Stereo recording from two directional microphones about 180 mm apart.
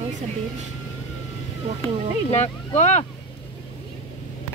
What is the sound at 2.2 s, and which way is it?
Speech, 40° left (ahead or behind).